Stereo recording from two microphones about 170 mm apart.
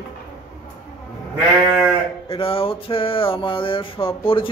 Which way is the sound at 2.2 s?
35° left (ahead or behind).